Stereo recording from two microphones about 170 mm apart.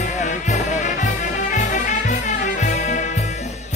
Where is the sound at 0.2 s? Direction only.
45° left (ahead or behind).